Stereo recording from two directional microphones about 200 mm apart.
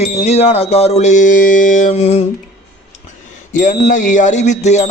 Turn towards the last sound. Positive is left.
turn(degrees=35)  # may be behind; listen again after turning